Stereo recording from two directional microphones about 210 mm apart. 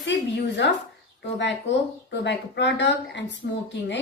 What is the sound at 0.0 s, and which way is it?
Speech, 55° left (ahead or behind).